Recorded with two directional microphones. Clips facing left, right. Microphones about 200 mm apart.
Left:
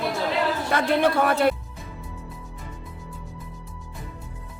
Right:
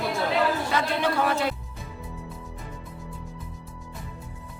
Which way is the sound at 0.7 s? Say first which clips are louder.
Left 4 dB; 55° left (ahead or behind).